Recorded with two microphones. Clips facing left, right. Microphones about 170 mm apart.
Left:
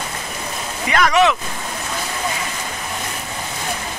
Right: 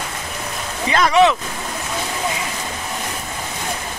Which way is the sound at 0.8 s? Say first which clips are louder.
Right 1 dB; 30° right (ahead or behind).